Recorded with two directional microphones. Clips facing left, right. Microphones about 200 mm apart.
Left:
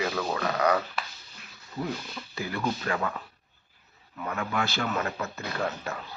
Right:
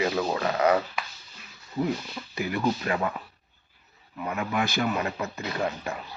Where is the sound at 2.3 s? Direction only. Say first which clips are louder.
Right 4 dB; 15° right (ahead or behind).